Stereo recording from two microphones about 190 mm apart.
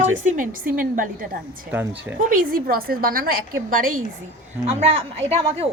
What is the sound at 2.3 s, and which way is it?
A woman's voice, 45° right (ahead or behind).